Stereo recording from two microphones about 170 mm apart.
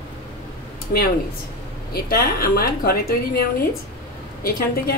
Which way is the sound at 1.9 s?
65° left (ahead or behind).